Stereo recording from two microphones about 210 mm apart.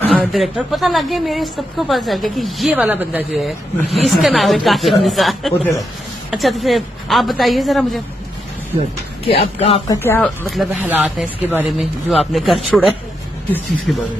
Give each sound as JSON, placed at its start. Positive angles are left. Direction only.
{"t": 0.1, "sound": "a woman's voice", "side_deg": 0}
{"t": 9.2, "sound": "speech", "side_deg": 25}
{"t": 10.0, "sound": "speech", "side_deg": 10}
{"t": 10.5, "sound": "a woman's voice", "side_deg": -5}
{"t": 13.9, "sound": "a woman's voice", "side_deg": 0}